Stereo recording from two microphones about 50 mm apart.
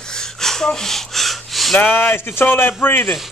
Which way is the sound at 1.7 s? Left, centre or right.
Left.